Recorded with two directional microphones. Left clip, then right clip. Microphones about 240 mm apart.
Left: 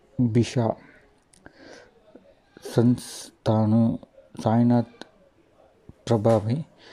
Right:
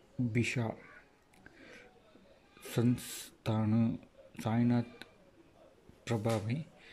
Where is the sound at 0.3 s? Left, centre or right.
Left.